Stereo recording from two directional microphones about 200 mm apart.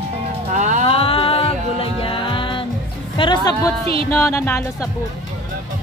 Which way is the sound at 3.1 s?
25° left (ahead or behind).